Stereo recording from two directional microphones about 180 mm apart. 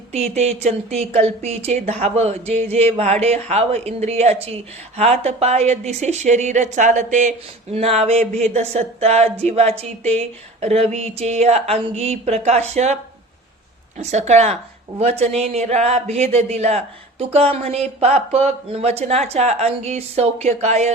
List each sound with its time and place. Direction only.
0.1 s a man's voice: 35° right (ahead or behind)
14.0 s a man's voice: 40° right (ahead or behind)